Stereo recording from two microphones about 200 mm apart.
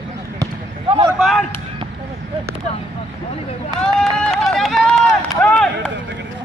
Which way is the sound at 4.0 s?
Centre (ahead or behind).